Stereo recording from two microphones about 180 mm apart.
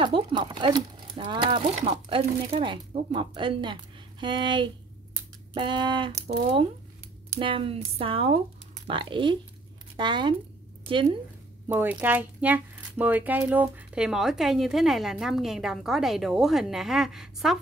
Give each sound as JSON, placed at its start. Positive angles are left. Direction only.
{"t": 0.0, "sound": "speech", "side_deg": -25}
{"t": 11.7, "sound": "speech", "side_deg": -10}